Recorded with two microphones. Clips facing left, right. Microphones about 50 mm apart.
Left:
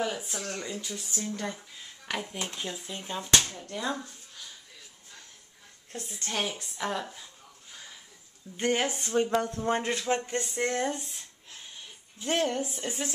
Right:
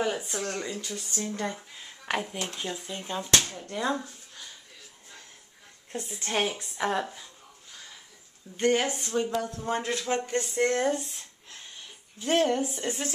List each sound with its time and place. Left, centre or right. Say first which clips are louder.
0.4 s a woman's voice: right 4 dB; centre
0.7 s speech: right 1 dB; centre
1.2 s speech: right 3 dB; centre
2.3 s speech: right 2 dB; centre
3.6 s speech: right 4 dB; centre
5.9 s a woman's voice: right 3 dB; centre
8.5 s speech: right 3 dB; centre
9.0 s speech: left 2 dB; left
10.0 s speech: right 1 dB; centre
10.6 s a sound: right 5 dB; centre
12.2 s a woman's voice: right 4 dB; centre
12.6 s speech: right 3 dB; centre